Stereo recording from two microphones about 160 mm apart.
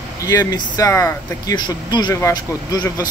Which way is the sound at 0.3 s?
20° left (ahead or behind).